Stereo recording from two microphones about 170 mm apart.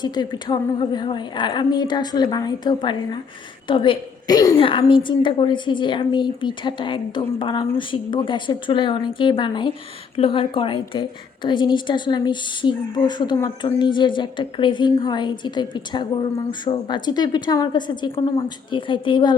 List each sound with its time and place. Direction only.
0.0 s a woman's voice: 25° left (ahead or behind)
4.5 s a woman's voice: 30° left (ahead or behind)